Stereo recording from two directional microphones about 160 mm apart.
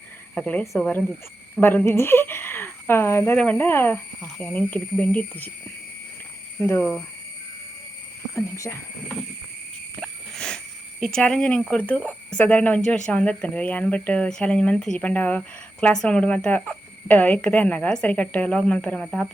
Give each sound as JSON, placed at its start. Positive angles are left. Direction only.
{"t": 0.3, "sound": "speech", "side_deg": 5}
{"t": 6.6, "sound": "speech", "side_deg": 10}
{"t": 8.4, "sound": "speech", "side_deg": 20}
{"t": 10.0, "sound": "a sound", "side_deg": 5}
{"t": 11.0, "sound": "speech", "side_deg": 5}